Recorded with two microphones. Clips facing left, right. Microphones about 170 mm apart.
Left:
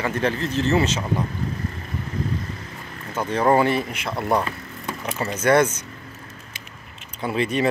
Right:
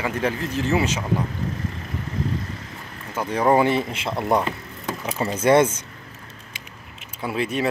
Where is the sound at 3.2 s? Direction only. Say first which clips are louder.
Even; 10° right (ahead or behind); by 5.8 s 25° right (ahead or behind).